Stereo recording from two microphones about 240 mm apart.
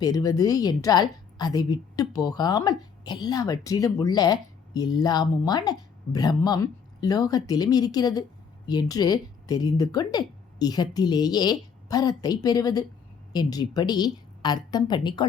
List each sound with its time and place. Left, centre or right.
0.0 s a woman's voice: centre